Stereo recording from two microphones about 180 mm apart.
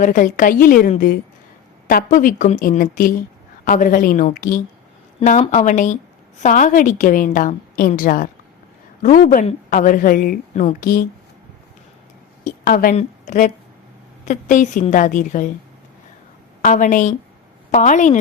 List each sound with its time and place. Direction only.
0.0 s a woman's voice: 45° left (ahead or behind)
12.5 s a woman's voice: 50° left (ahead or behind)
16.6 s a woman's voice: 45° left (ahead or behind)